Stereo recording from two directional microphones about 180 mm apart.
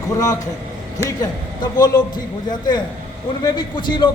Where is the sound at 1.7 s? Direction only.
20° left (ahead or behind).